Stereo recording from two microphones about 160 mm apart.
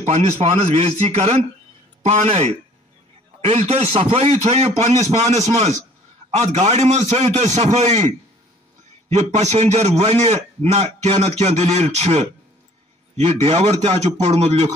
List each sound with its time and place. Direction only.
0.0 s a man's voice: 45° right (ahead or behind)
5.0 s a man's voice: 20° right (ahead or behind)
6.3 s a man's voice: 45° right (ahead or behind)
9.1 s a man's voice: 45° right (ahead or behind)